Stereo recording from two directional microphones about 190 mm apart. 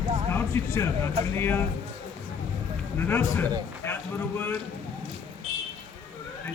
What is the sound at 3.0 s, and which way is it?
Speech, 10° left (ahead or behind).